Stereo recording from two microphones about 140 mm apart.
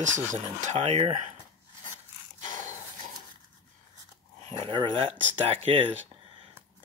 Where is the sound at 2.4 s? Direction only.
65° right (ahead or behind).